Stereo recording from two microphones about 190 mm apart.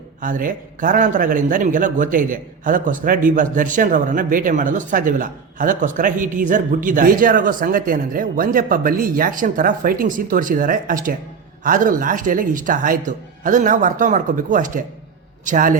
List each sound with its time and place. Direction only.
0.2 s a man's voice: 45° right (ahead or behind)